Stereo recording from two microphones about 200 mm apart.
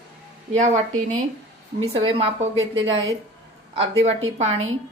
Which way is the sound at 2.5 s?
75° right (ahead or behind).